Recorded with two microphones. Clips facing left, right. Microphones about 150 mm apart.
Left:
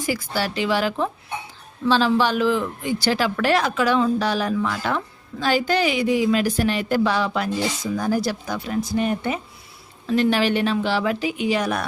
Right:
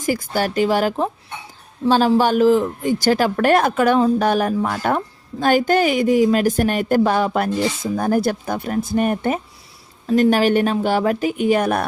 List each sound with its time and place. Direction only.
0.0 s a woman's voice: 45° right (ahead or behind)